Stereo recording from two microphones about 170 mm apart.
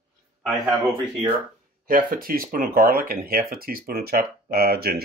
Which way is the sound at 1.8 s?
55° right (ahead or behind).